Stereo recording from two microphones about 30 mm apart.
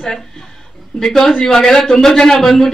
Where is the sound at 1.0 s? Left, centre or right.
Centre.